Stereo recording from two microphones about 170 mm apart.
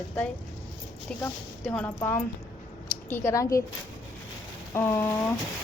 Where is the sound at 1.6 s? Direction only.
5° left (ahead or behind).